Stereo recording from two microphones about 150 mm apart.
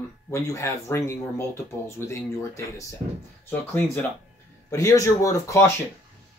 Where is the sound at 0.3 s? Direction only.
20° left (ahead or behind).